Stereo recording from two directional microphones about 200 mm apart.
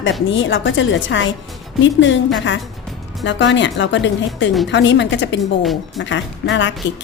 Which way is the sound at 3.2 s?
65° left (ahead or behind).